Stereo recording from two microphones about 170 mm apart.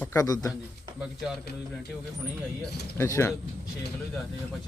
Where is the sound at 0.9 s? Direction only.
Centre (ahead or behind).